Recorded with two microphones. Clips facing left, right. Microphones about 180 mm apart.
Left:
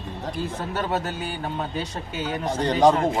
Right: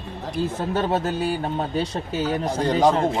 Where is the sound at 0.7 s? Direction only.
35° right (ahead or behind).